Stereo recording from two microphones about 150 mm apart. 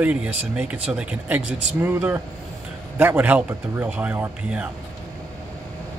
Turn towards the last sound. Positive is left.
turn(degrees=-15)  # may be behind; listen again after turning